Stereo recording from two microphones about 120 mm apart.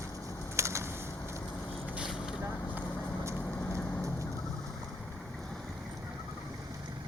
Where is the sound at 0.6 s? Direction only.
25° right (ahead or behind).